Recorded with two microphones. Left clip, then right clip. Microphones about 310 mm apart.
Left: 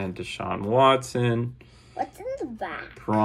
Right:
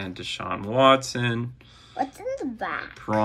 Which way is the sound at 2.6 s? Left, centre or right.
Right.